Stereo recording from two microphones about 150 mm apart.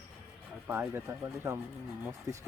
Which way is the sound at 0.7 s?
15° right (ahead or behind).